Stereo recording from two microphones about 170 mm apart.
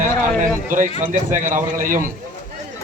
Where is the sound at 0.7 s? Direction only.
50° right (ahead or behind).